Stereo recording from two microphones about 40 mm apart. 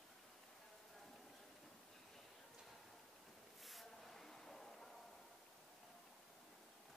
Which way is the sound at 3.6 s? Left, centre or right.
Centre.